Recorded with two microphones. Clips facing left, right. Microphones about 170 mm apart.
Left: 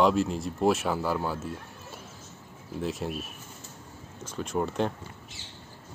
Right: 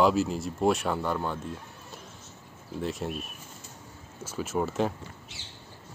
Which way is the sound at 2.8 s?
Centre (ahead or behind).